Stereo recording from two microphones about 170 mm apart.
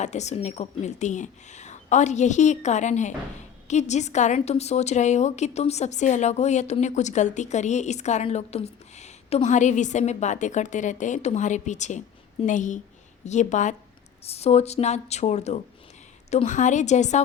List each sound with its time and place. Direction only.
0.0 s a woman's voice: 40° left (ahead or behind)